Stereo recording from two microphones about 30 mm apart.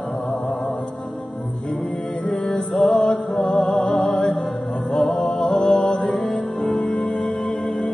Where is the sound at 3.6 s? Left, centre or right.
Left.